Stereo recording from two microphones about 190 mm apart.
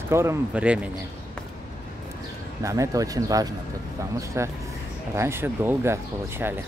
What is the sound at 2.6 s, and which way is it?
Speech, 15° right (ahead or behind).